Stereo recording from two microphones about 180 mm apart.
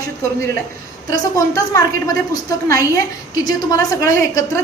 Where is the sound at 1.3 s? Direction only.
20° left (ahead or behind).